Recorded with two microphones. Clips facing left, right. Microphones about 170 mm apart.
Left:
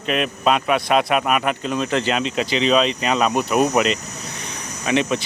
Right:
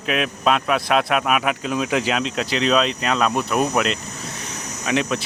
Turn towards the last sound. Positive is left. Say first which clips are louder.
# left 2 dB
turn(degrees=0)  # may be behind; listen again after turning